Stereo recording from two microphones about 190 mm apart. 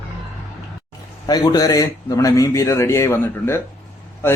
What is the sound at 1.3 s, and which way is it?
A man's voice, 20° left (ahead or behind).